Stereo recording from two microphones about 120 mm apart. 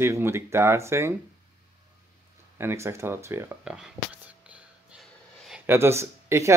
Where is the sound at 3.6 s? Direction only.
10° right (ahead or behind).